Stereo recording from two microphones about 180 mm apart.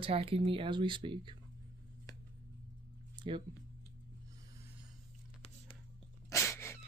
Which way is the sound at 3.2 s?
25° right (ahead or behind).